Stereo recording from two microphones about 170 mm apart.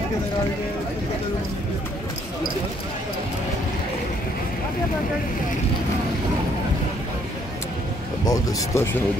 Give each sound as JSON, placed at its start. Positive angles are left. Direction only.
{"t": 8.3, "sound": "speech", "side_deg": 20}